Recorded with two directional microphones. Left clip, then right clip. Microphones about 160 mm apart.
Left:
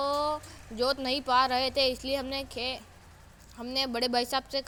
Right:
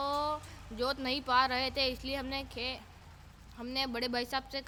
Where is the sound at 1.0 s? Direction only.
15° left (ahead or behind).